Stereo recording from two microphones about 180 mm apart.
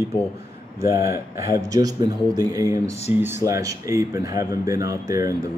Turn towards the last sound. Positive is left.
turn(degrees=-15)  # may be behind; listen again after turning